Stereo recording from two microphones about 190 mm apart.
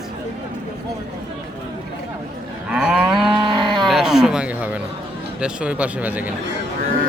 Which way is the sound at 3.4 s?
25° right (ahead or behind).